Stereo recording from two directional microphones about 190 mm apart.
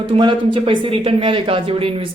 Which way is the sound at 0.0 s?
25° right (ahead or behind).